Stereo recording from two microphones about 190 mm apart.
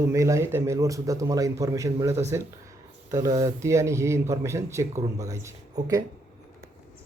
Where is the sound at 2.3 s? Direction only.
15° right (ahead or behind).